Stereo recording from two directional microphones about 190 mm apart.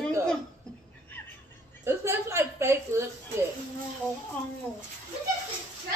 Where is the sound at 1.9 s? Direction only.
15° right (ahead or behind).